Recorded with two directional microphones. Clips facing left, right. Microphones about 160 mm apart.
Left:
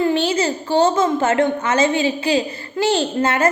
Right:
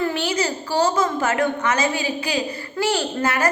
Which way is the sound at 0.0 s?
25° left (ahead or behind).